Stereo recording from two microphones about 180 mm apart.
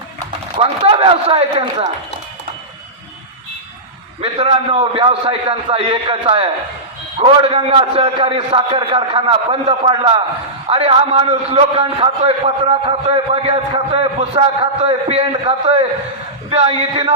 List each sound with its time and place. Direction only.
0.5 s a man's voice: 30° right (ahead or behind)
4.2 s a man's voice: 30° right (ahead or behind)